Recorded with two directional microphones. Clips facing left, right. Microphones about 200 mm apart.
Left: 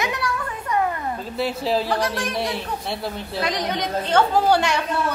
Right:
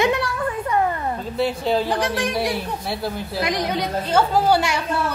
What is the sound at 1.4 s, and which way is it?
A woman's voice, centre (ahead or behind).